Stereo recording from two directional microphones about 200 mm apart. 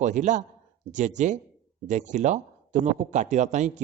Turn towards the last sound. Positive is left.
turn(degrees=-35)  # may be behind; listen again after turning